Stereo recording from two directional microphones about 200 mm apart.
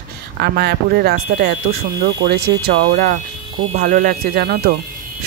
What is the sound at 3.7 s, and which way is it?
Speech, 45° right (ahead or behind).